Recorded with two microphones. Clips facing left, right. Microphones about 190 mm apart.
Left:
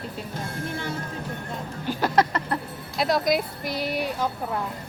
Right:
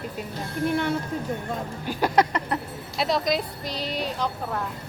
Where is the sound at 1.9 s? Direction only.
10° right (ahead or behind).